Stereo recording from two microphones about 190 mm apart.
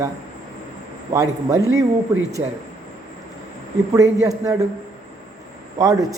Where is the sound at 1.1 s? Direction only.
20° right (ahead or behind).